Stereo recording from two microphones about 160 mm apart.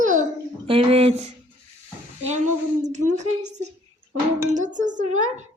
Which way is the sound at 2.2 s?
45° right (ahead or behind).